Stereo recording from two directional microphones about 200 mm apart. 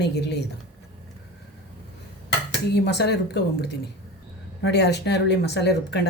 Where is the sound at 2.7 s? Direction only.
55° left (ahead or behind).